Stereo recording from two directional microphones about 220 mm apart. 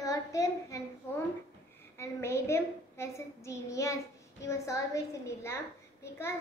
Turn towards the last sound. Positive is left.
turn(degrees=10)  # may be behind; listen again after turning